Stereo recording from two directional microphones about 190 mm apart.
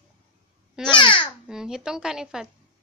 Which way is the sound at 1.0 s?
25° left (ahead or behind).